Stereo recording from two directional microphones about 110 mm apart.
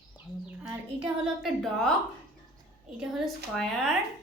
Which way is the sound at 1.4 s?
Centre (ahead or behind).